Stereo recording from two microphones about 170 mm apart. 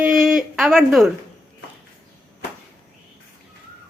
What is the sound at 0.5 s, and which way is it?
Speech, centre (ahead or behind).